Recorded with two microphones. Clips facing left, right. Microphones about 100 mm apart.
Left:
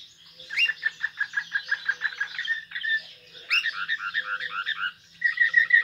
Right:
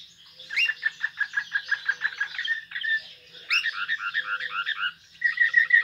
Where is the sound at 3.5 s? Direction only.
5° left (ahead or behind).